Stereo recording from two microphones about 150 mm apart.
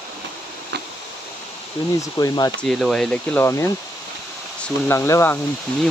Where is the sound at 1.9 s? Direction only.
25° left (ahead or behind).